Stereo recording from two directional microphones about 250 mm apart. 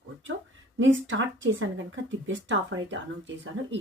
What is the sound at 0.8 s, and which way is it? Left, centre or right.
Speech, right.